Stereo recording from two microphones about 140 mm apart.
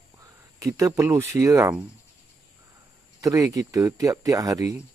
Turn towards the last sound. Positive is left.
turn(degrees=-25)  # may be behind; listen again after turning